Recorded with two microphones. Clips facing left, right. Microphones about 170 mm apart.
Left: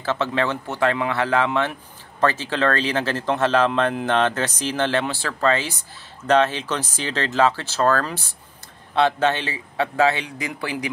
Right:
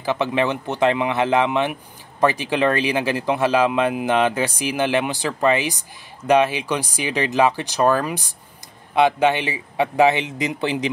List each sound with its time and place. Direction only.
0.0 s speech: 15° right (ahead or behind)